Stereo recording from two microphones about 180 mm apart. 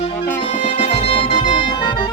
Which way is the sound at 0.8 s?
30° left (ahead or behind).